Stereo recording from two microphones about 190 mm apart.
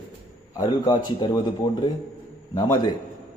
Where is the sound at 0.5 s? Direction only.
20° left (ahead or behind).